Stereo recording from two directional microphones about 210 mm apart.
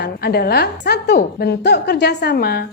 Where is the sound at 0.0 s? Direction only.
50° left (ahead or behind).